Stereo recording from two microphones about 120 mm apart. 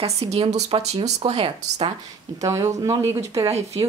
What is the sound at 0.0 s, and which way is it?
Speech, 60° right (ahead or behind).